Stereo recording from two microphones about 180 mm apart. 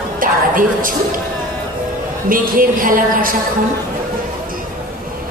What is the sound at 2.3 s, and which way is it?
Speech, 50° right (ahead or behind).